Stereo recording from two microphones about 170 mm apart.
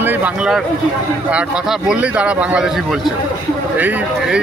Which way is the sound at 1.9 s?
5° right (ahead or behind).